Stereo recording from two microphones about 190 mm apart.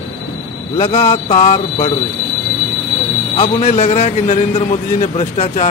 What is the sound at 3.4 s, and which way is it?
A man's voice, 35° left (ahead or behind).